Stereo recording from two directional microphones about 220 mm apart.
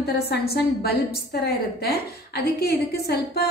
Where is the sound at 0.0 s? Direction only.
45° left (ahead or behind).